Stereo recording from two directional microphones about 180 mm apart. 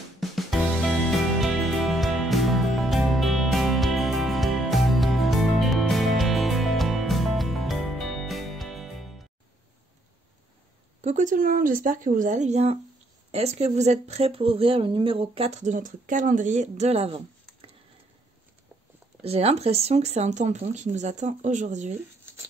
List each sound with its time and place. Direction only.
0.2 s music: centre (ahead or behind)
11.0 s speech: 40° right (ahead or behind)
19.2 s speech: 35° right (ahead or behind)